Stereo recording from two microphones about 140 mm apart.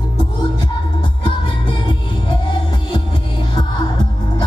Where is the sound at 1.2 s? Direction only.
35° left (ahead or behind).